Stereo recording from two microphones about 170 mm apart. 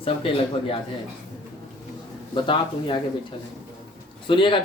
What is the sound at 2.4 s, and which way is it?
Speech, 30° left (ahead or behind).